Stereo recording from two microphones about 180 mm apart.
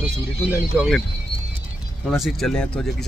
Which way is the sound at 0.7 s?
5° right (ahead or behind).